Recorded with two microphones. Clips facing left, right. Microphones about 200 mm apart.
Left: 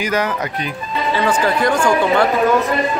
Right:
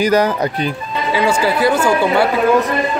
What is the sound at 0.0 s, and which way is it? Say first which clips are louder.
Speech: right 6 dB; 35° right (ahead or behind).